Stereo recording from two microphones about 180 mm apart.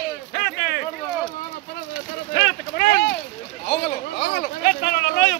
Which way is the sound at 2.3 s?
55° left (ahead or behind).